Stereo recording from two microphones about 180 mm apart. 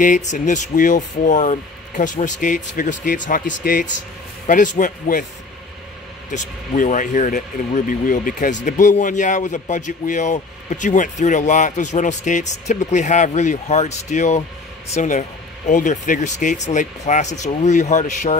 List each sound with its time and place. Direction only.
0.0 s speech: 45° left (ahead or behind)
6.3 s speech: 45° left (ahead or behind)